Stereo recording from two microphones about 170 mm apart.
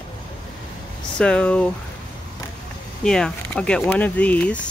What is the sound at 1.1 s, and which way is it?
Speech, 5° left (ahead or behind).